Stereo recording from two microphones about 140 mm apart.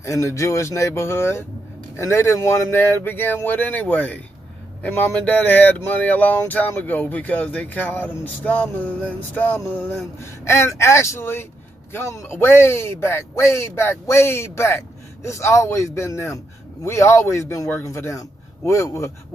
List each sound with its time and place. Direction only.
0.0 s a man's voice: 20° left (ahead or behind)